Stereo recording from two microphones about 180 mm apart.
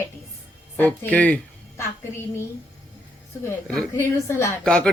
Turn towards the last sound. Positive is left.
turn(degrees=5)  # may be behind; listen again after turning